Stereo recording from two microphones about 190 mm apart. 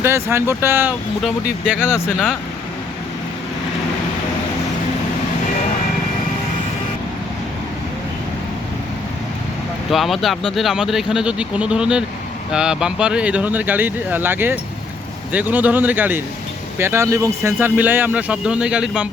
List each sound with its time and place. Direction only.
0.0 s speech: 15° right (ahead or behind)
9.9 s speech: centre (ahead or behind)